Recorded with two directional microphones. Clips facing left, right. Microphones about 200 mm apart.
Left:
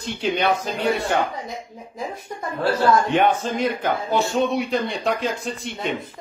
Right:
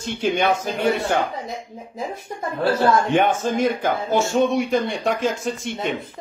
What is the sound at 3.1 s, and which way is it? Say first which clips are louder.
A man's voice: right 1 dB; 45° right (ahead or behind).